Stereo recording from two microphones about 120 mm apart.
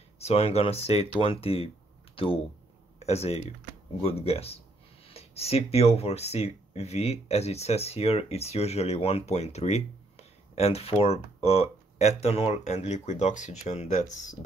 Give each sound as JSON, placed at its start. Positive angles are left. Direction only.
{"t": 0.2, "sound": "speech", "side_deg": 55}
{"t": 3.0, "sound": "speech", "side_deg": 60}